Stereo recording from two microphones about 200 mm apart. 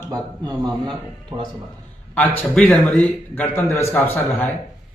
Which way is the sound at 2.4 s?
5° left (ahead or behind).